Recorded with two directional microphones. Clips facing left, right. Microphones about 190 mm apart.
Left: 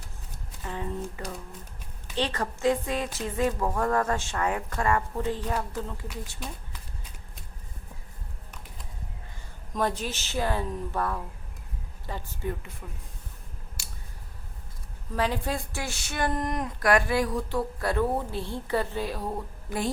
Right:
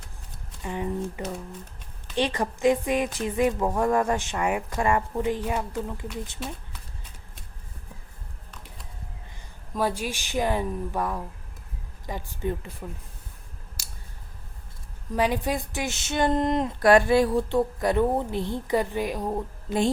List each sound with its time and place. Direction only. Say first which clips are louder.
0.6 s a woman's voice: right 4 dB; 15° right (ahead or behind)
9.7 s a woman's voice: right 2 dB; 10° right (ahead or behind)
12.8 s speech: right 6 dB; 40° right (ahead or behind)
13.8 s a sound: left 1 dB; 40° right (ahead or behind)
15.1 s speech: right 4 dB; 15° right (ahead or behind)